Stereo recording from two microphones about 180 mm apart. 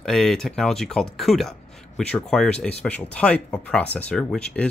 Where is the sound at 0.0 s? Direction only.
Centre (ahead or behind).